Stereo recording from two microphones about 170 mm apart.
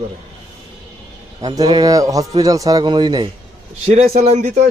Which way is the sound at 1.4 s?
25° right (ahead or behind).